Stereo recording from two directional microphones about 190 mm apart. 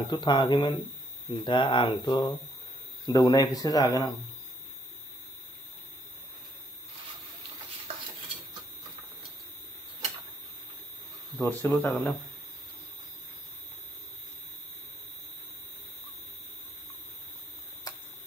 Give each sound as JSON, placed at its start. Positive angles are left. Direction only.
{"t": 0.0, "sound": "speech", "side_deg": 25}
{"t": 11.3, "sound": "speech", "side_deg": 10}
{"t": 17.9, "sound": "a sound", "side_deg": 20}